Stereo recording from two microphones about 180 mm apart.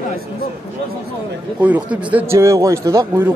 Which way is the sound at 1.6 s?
10° right (ahead or behind).